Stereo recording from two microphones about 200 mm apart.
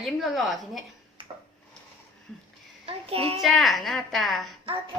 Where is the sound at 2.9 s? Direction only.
30° right (ahead or behind).